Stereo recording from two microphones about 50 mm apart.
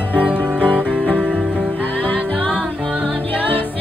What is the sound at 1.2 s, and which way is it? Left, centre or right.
Music, right.